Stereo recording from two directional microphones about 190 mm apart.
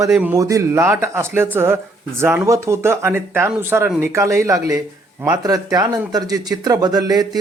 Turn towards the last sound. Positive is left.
turn(degrees=-20)  # may be behind; listen again after turning